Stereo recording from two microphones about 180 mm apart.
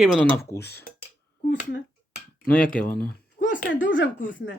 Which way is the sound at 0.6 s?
60° left (ahead or behind).